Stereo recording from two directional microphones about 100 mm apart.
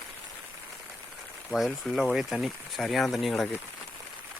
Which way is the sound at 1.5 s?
Centre (ahead or behind).